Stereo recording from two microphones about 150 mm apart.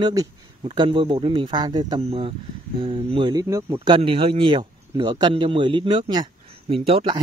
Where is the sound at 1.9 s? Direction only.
40° right (ahead or behind).